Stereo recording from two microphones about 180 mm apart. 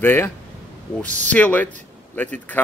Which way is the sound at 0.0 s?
10° left (ahead or behind).